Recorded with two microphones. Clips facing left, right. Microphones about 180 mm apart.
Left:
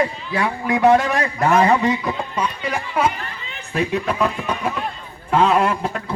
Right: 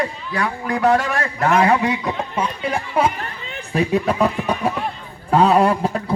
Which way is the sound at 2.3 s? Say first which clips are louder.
Right 1 dB; 30° right (ahead or behind).